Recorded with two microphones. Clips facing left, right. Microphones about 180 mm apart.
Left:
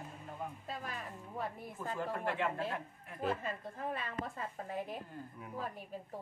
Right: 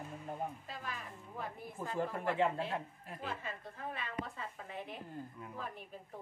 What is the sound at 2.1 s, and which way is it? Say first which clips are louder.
Speech: right 3 dB; 25° right (ahead or behind).